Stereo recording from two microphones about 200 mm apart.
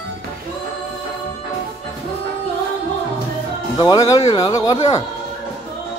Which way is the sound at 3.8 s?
20° left (ahead or behind).